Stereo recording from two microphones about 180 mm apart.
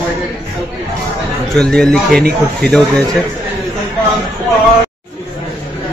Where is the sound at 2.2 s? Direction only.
60° right (ahead or behind).